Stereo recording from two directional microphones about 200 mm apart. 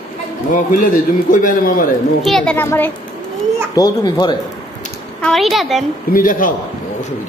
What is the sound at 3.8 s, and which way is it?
Speech, 20° left (ahead or behind).